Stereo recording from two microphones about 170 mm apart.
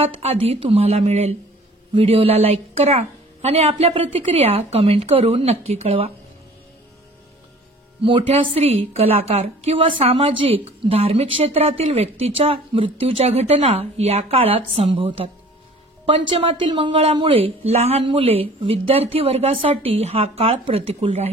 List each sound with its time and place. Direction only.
0.0 s speech: 35° right (ahead or behind)
8.0 s speech: 30° right (ahead or behind)